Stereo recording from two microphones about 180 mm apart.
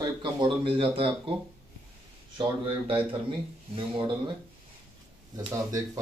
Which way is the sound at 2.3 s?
30° right (ahead or behind).